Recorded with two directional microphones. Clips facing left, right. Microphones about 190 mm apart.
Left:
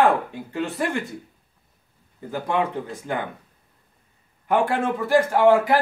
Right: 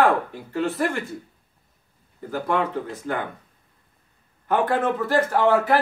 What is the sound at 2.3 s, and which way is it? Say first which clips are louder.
Speech: even; 15° left (ahead or behind).